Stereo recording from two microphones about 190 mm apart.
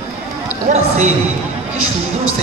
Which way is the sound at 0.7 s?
35° right (ahead or behind).